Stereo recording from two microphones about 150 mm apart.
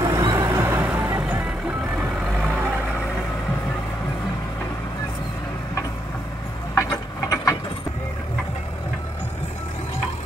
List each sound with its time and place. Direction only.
0.0 s music: 25° right (ahead or behind); by 1.5 s 5° right (ahead or behind)
2.0 s vehicle: 5° right (ahead or behind)
6.7 s mechanisms: 20° left (ahead or behind)